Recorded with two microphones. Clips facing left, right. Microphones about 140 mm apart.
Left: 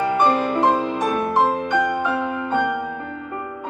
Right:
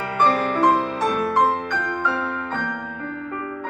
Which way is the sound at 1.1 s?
25° left (ahead or behind).